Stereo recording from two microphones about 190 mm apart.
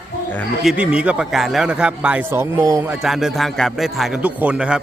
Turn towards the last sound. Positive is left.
turn(degrees=-5)  # may be behind; listen again after turning